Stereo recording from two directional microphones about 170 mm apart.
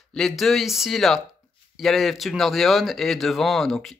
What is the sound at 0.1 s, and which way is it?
Speech, centre (ahead or behind).